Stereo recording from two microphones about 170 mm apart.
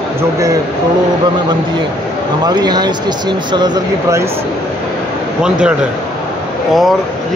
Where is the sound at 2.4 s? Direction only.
25° right (ahead or behind).